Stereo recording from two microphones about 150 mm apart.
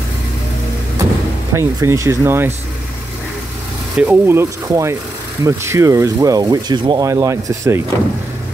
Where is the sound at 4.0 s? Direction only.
15° right (ahead or behind).